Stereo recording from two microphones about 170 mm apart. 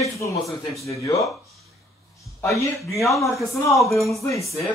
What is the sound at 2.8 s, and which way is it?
Speech, 15° left (ahead or behind).